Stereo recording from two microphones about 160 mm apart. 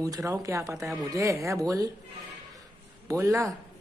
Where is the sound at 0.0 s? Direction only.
20° right (ahead or behind).